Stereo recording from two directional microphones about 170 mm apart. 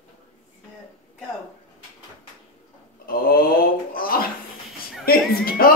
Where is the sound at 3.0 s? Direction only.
60° left (ahead or behind).